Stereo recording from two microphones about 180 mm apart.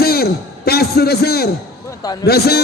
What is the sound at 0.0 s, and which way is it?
A man's voice, 60° left (ahead or behind).